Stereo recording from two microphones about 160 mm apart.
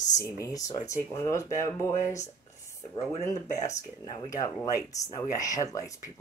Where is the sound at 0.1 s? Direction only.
20° left (ahead or behind).